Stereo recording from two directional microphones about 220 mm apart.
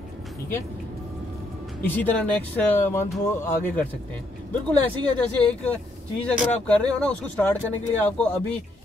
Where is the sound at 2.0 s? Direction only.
5° left (ahead or behind).